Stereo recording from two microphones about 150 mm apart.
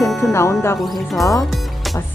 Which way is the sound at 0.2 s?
15° left (ahead or behind).